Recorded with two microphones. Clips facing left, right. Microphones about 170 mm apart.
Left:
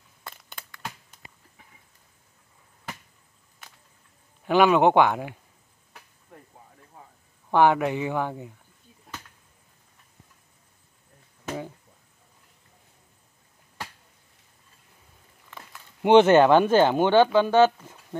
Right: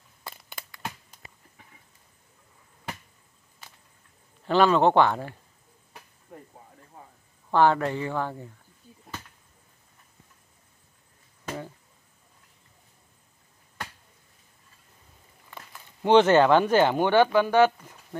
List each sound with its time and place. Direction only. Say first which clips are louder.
0.2 s a sound: right 1 dB; 5° right (ahead or behind)
4.5 s speech: left 2 dB; 15° left (ahead or behind)
7.5 s speech: left 1 dB; 15° left (ahead or behind)
11.4 s a sound: left 2 dB; 10° left (ahead or behind)
16.0 s speech: left 2 dB; 15° left (ahead or behind)
17.1 s speech: left 2 dB; 10° right (ahead or behind)